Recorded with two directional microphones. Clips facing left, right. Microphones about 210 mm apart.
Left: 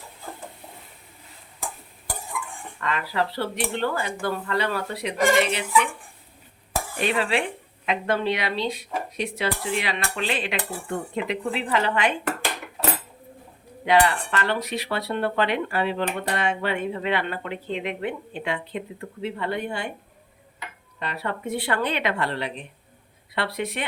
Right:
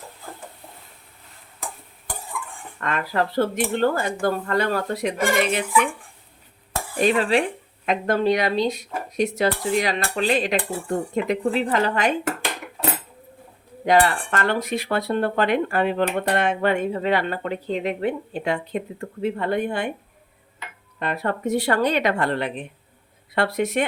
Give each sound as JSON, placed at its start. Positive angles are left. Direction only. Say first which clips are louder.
{"t": 2.8, "sound": "speech", "louder": "right 2 dB", "side_deg": -50}
{"t": 6.9, "sound": "dishes", "louder": "right 5 dB", "side_deg": -40}
{"t": 7.9, "sound": "speech", "louder": "right 4 dB", "side_deg": -40}
{"t": 9.1, "sound": "dishes", "louder": "right 8 dB", "side_deg": -45}
{"t": 13.8, "sound": "speech", "louder": "right 2 dB", "side_deg": -40}
{"t": 21.0, "sound": "speech", "louder": "right 5 dB", "side_deg": -50}